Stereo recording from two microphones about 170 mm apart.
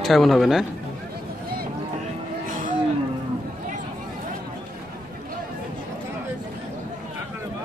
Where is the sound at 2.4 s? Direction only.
50° right (ahead or behind).